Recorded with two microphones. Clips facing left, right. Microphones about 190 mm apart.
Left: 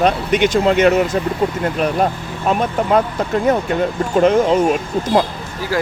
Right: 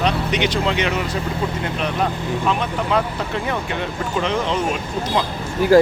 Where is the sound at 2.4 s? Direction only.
45° left (ahead or behind).